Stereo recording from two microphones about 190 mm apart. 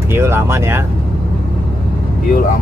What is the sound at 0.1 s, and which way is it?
Speech, 10° right (ahead or behind).